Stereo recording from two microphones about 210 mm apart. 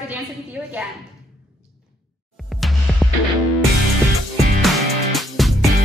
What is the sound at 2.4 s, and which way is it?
Music, centre (ahead or behind).